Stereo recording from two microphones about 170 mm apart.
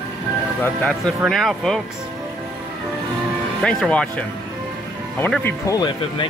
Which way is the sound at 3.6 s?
5° left (ahead or behind).